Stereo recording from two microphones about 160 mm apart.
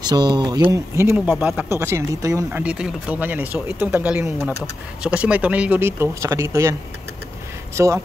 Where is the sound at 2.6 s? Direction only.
5° right (ahead or behind).